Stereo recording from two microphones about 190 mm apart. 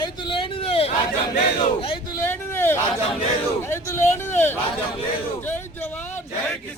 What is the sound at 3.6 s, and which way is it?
Speech, 15° left (ahead or behind).